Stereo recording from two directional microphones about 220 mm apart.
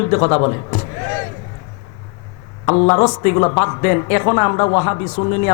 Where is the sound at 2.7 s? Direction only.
30° left (ahead or behind).